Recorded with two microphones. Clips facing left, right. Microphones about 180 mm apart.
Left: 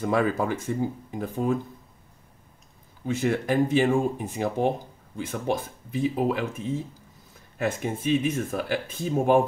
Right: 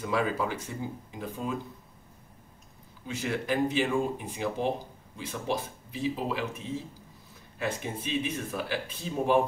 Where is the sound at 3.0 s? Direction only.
50° left (ahead or behind).